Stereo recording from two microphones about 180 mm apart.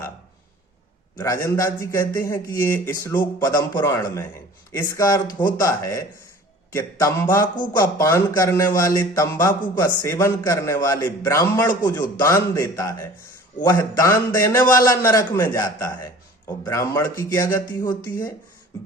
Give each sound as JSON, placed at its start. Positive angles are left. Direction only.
{"t": 1.2, "sound": "a man's voice", "side_deg": 15}